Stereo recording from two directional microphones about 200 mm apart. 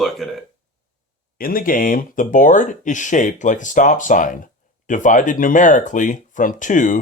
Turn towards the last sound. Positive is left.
turn(degrees=40)  # may be behind; listen again after turning